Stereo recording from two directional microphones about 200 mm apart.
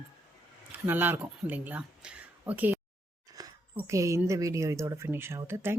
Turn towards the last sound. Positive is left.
turn(degrees=-10)  # may be behind; listen again after turning